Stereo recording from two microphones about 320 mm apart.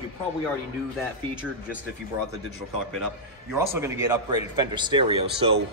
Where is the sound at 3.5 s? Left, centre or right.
Centre.